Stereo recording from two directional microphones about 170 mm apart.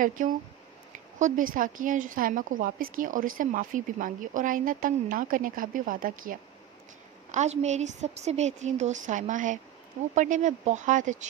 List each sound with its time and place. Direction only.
0.2 s a woman's voice: 50° right (ahead or behind)
7.2 s a woman's voice: 45° right (ahead or behind)